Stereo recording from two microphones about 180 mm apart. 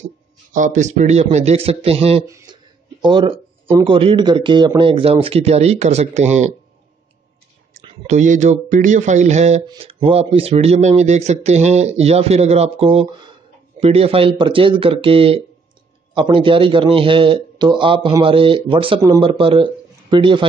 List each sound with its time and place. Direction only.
0.0 s speech: 45° right (ahead or behind)
2.2 s speech: 20° right (ahead or behind); by 6.5 s 40° right (ahead or behind)
7.8 s a man's voice: 40° right (ahead or behind)